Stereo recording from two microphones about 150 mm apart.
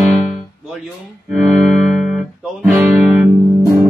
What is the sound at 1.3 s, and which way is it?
Music, centre (ahead or behind).